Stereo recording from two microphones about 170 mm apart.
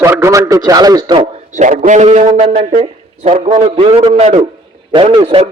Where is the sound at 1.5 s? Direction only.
50° right (ahead or behind).